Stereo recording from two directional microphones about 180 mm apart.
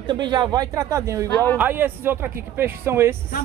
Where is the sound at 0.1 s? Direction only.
25° right (ahead or behind).